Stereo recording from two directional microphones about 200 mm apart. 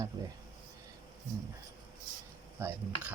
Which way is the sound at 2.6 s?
15° right (ahead or behind).